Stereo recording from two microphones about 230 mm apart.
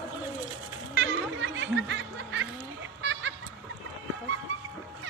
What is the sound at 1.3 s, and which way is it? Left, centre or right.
Snicker, right.